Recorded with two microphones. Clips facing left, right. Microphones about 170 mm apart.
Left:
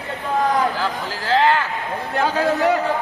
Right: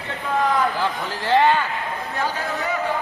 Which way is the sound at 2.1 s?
70° left (ahead or behind).